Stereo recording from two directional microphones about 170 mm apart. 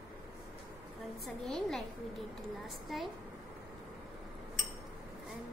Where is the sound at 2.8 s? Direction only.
Centre (ahead or behind).